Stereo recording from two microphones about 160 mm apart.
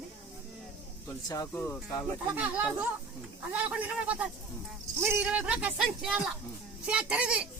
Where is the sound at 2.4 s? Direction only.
10° right (ahead or behind).